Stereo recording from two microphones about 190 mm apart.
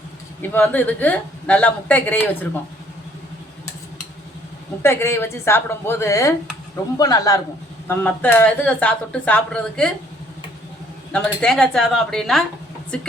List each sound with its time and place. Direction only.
0.5 s speech: 10° left (ahead or behind)
4.8 s a man's voice: 10° left (ahead or behind)
11.1 s a woman's voice: 5° left (ahead or behind)